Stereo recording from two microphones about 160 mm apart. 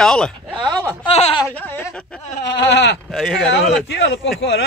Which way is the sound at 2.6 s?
90° left.